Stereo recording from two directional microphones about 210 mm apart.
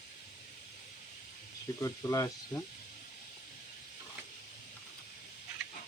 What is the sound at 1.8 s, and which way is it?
Speech, 15° left (ahead or behind).